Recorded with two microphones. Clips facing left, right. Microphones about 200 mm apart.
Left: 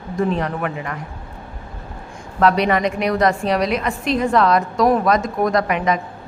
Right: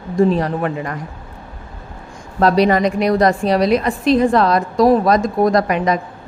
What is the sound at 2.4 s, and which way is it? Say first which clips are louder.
A woman's voice: right 3 dB; 35° right (ahead or behind).